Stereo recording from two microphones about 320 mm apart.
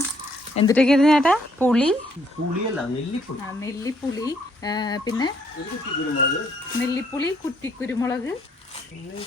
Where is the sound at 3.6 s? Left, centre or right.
Centre.